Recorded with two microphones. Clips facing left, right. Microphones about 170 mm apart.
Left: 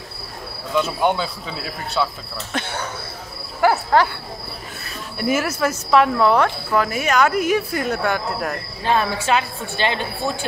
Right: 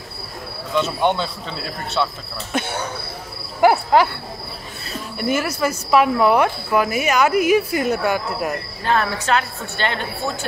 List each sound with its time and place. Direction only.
0.7 s speech: centre (ahead or behind)
2.5 s speech: 10° right (ahead or behind)
5.1 s speech: centre (ahead or behind)
8.8 s speech: 15° left (ahead or behind)